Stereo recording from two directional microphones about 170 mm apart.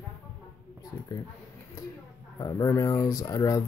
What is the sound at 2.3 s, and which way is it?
Speech, 20° left (ahead or behind).